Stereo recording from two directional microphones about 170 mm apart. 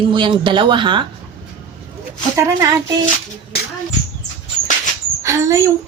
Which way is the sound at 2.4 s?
20° right (ahead or behind).